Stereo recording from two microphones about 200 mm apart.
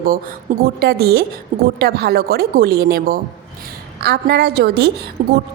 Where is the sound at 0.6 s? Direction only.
50° right (ahead or behind).